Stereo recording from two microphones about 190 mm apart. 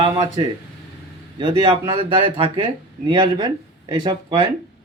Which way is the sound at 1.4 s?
25° right (ahead or behind).